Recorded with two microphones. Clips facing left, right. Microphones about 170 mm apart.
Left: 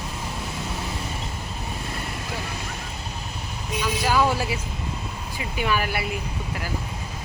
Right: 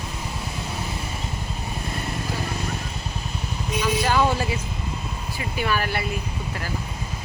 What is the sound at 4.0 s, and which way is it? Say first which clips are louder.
Speech: left 1 dB; 5° left (ahead or behind).